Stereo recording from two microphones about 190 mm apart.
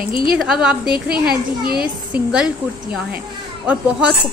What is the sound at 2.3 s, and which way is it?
Speech, 5° right (ahead or behind).